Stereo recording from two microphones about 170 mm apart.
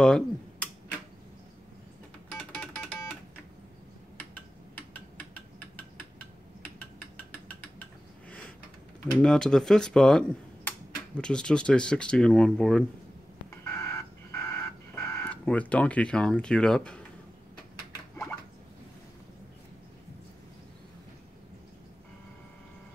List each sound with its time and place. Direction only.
0.0 s speech: 5° left (ahead or behind)
2.3 s music: 5° left (ahead or behind)
9.0 s speech: 5° left (ahead or behind)
13.7 s a sound: 15° left (ahead or behind)